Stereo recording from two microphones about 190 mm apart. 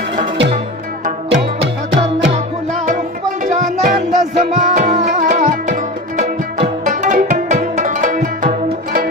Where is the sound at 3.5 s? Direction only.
40° right (ahead or behind).